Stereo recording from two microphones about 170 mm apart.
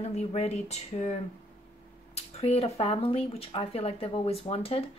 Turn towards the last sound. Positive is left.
turn(degrees=35)  # may be behind; listen again after turning